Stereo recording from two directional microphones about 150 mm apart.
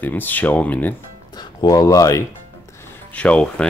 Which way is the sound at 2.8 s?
10° left (ahead or behind).